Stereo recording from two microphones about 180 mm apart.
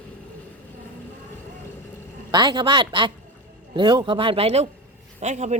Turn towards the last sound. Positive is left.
turn(degrees=-40)  # may be behind; listen again after turning